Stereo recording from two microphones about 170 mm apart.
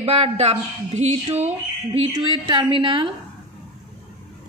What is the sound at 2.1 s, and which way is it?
Speech, 25° right (ahead or behind).